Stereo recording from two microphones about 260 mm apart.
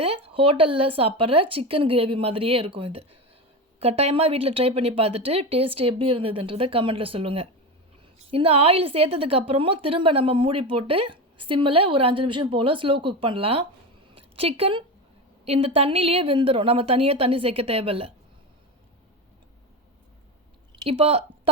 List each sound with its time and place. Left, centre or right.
0.0 s a woman's voice: right
20.8 s speech: right